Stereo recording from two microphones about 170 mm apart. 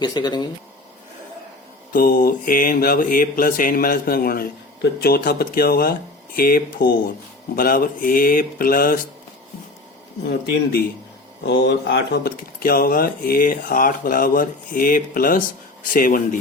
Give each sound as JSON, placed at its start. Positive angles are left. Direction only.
{"t": 0.0, "sound": "speech", "side_deg": 25}
{"t": 1.9, "sound": "speech", "side_deg": 55}
{"t": 10.2, "sound": "speech", "side_deg": 65}
{"t": 11.4, "sound": "speech", "side_deg": 85}